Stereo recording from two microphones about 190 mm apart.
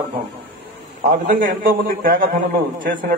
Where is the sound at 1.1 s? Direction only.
45° right (ahead or behind).